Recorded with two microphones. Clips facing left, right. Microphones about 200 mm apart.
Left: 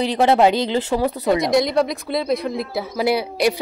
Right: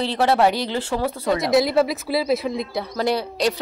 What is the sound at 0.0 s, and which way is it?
Speech, 15° left (ahead or behind).